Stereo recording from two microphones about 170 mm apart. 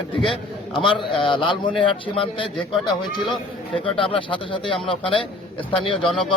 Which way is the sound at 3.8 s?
30° left (ahead or behind).